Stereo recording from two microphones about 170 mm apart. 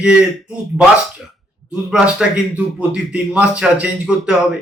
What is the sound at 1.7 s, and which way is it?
A man's voice, 5° right (ahead or behind).